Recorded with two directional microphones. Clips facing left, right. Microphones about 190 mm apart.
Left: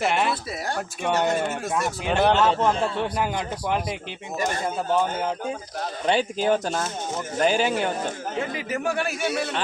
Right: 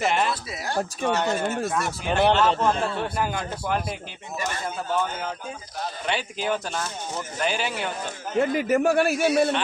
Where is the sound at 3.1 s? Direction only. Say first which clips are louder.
Left 1 dB; 20° left (ahead or behind).